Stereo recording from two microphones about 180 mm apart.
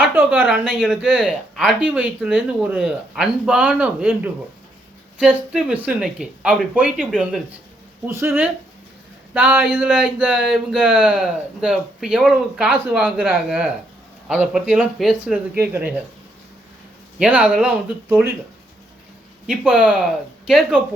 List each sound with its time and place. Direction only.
0.0 s a sound: 10° right (ahead or behind)
0.4 s speech: centre (ahead or behind)
8.0 s speech: 15° right (ahead or behind)
17.2 s speech: 5° right (ahead or behind)
19.5 s speech: 5° right (ahead or behind)